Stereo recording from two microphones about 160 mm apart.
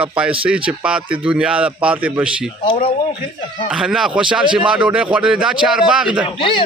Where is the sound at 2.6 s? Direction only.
35° left (ahead or behind).